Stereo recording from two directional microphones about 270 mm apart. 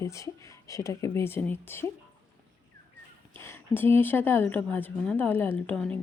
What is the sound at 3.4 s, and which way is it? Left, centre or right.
Speech, centre.